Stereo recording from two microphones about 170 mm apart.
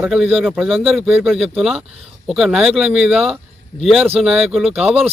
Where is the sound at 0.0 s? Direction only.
Centre (ahead or behind).